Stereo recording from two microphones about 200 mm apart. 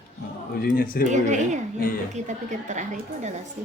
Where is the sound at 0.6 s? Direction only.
45° left (ahead or behind).